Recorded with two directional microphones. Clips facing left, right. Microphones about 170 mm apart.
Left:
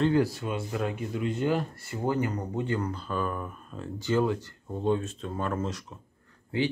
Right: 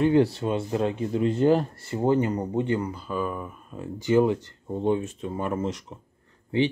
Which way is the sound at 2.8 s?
5° right (ahead or behind).